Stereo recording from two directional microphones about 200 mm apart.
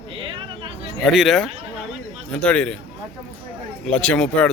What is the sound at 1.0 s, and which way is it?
Speech, centre (ahead or behind).